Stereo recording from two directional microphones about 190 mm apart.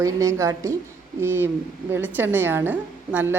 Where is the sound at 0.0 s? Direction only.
15° right (ahead or behind).